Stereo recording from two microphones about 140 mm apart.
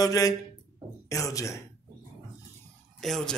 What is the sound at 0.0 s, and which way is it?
A man's voice, 25° left (ahead or behind).